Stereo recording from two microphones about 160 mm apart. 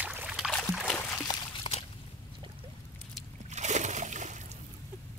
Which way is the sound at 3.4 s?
45° right (ahead or behind).